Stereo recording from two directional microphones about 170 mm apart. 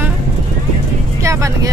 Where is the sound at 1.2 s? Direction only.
20° right (ahead or behind).